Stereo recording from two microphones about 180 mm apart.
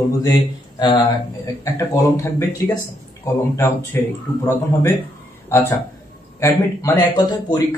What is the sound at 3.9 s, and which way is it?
Speech, 15° left (ahead or behind).